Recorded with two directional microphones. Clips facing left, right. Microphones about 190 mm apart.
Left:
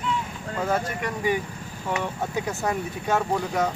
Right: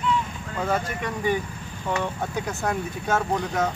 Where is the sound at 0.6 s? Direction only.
5° left (ahead or behind).